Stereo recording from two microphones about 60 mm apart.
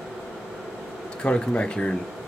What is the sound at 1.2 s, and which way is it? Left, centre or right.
Speech, centre.